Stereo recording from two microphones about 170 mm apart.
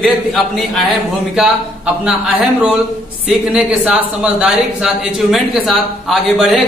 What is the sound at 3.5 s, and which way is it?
Speech, 5° right (ahead or behind).